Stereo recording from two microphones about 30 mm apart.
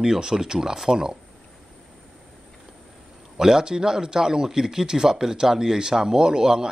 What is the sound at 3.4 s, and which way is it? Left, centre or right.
Speech, centre.